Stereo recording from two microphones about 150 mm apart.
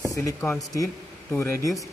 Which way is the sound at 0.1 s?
20° left (ahead or behind).